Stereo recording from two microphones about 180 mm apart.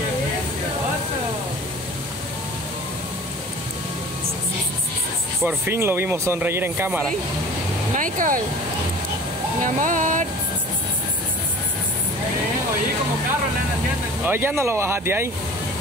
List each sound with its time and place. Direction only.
5.4 s speech: 10° right (ahead or behind)
7.9 s speech: 45° right (ahead or behind)
9.6 s speech: 45° right (ahead or behind)
14.2 s speech: 10° right (ahead or behind)